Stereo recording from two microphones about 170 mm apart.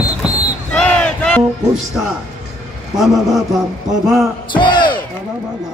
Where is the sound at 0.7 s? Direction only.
5° left (ahead or behind).